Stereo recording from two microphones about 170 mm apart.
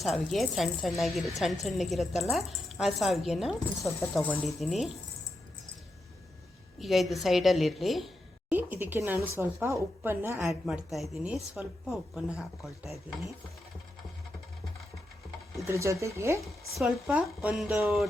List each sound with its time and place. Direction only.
0.0 s a woman's voice: centre (ahead or behind)
4.2 s speech: 10° left (ahead or behind)
4.4 s a woman's voice: centre (ahead or behind)
6.7 s a woman's voice: centre (ahead or behind)
10.5 s a woman's voice: centre (ahead or behind)
15.6 s speech: 15° right (ahead or behind)
16.7 s a woman's voice: 5° right (ahead or behind)